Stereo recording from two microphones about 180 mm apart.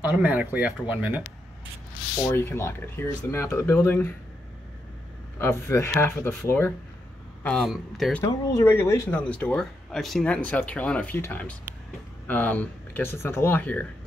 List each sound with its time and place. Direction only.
0.0 s speech: 10° right (ahead or behind)
2.2 s speech: 15° left (ahead or behind)
5.4 s speech: 15° left (ahead or behind)
7.4 s a man's voice: centre (ahead or behind)
8.2 s speech: 15° left (ahead or behind)